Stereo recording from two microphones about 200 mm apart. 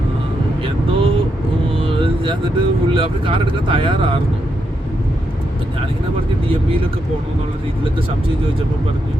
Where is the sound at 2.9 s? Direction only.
25° right (ahead or behind).